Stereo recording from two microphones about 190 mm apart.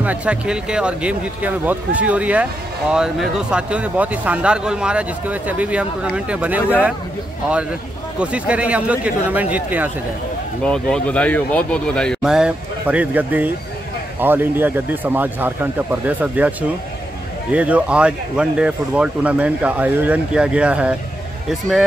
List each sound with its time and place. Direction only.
0.0 s speech: 5° right (ahead or behind)
8.2 s speech: 5° right (ahead or behind)
10.6 s speech: 5° left (ahead or behind)